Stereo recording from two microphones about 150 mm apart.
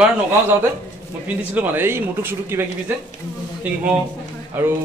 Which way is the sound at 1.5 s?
10° right (ahead or behind).